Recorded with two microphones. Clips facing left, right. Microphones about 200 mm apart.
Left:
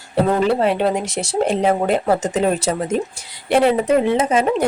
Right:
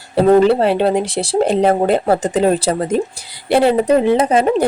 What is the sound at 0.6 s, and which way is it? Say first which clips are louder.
Speech: right 3 dB; 30° right (ahead or behind).